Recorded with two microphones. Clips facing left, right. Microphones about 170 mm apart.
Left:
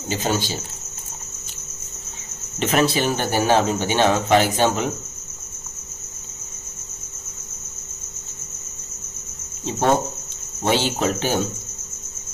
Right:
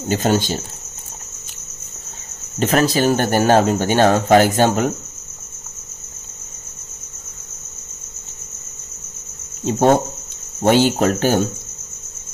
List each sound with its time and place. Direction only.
0.1 s speech: 45° right (ahead or behind)
2.6 s speech: 40° right (ahead or behind)
10.6 s speech: 50° right (ahead or behind)